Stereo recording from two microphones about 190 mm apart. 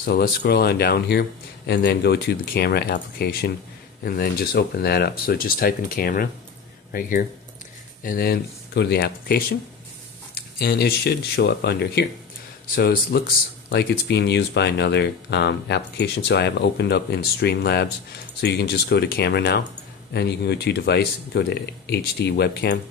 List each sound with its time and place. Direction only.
0.0 s speech: 55° left (ahead or behind)